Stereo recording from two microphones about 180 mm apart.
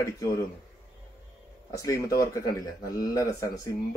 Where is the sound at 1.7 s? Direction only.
20° left (ahead or behind).